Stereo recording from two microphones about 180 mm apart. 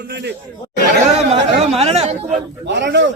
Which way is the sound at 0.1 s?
70° right (ahead or behind).